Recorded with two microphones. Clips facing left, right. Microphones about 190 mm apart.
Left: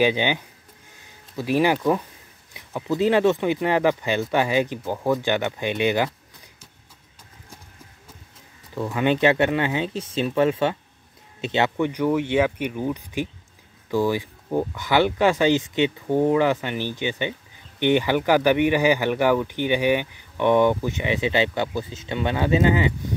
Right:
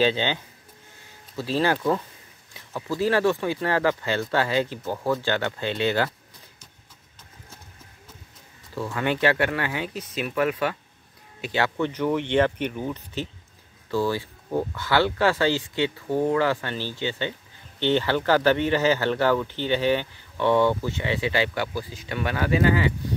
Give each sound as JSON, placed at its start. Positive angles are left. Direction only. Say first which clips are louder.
{"t": 0.0, "sound": "speech", "louder": "left 2 dB", "side_deg": 15}
{"t": 8.7, "sound": "speech", "louder": "left 4 dB", "side_deg": 20}
{"t": 11.7, "sound": "speech", "louder": "left 3 dB", "side_deg": 10}